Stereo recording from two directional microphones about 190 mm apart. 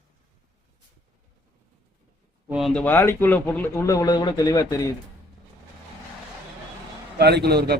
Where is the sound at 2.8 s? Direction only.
10° left (ahead or behind).